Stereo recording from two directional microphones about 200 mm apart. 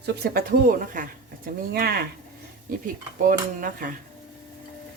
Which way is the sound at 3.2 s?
40° right (ahead or behind).